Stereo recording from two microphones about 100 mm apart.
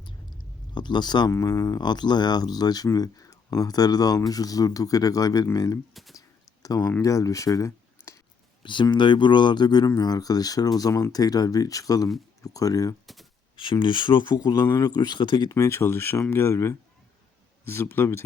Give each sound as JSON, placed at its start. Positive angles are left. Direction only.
{"t": 0.7, "sound": "speech", "side_deg": 50}
{"t": 1.3, "sound": "speech", "side_deg": 30}
{"t": 1.8, "sound": "speech", "side_deg": 45}
{"t": 5.9, "sound": "speech", "side_deg": 0}
{"t": 6.1, "sound": "a sound", "side_deg": 35}
{"t": 7.0, "sound": "speech", "side_deg": 35}
{"t": 8.6, "sound": "speech", "side_deg": 50}
{"t": 13.6, "sound": "speech", "side_deg": 55}